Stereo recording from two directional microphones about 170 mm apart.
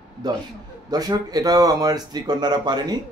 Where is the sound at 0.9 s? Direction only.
20° right (ahead or behind).